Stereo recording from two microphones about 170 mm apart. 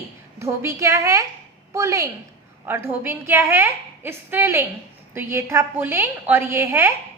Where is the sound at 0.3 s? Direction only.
15° right (ahead or behind).